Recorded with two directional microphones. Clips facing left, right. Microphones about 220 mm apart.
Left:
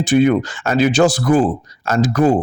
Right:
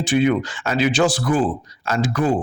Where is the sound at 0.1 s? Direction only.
45° left (ahead or behind).